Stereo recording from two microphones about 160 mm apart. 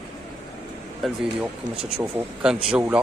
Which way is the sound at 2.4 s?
5° right (ahead or behind).